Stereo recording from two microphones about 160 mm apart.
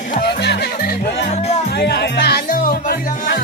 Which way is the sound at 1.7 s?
90° left.